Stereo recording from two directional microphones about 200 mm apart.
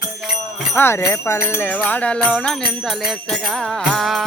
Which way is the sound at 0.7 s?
10° left (ahead or behind).